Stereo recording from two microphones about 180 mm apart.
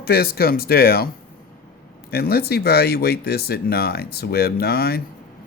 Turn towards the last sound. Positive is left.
turn(degrees=60)  # may be behind; listen again after turning